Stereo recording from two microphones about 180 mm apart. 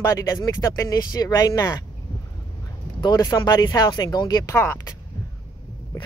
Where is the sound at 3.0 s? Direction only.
20° left (ahead or behind).